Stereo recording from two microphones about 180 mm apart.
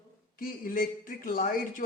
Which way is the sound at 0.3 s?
50° left (ahead or behind).